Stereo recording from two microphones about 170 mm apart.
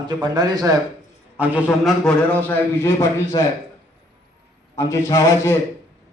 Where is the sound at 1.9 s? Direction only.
5° left (ahead or behind); by 3.5 s 25° left (ahead or behind).